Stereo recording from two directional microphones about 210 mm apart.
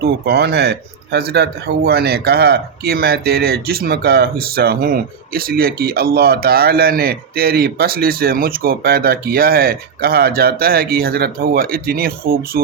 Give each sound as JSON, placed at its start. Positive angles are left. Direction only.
{"t": 0.0, "sound": "a man's voice", "side_deg": -50}